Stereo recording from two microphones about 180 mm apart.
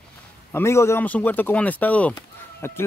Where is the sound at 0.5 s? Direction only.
15° left (ahead or behind).